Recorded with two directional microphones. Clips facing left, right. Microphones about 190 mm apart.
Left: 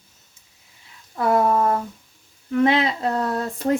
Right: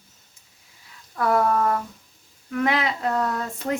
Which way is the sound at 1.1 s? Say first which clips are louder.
Left 2 dB; 25° left (ahead or behind).